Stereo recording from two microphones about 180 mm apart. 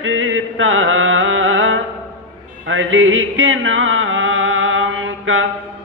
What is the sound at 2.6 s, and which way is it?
Chant, 90° right.